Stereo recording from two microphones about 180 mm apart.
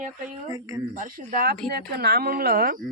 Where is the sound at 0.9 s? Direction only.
45° right (ahead or behind).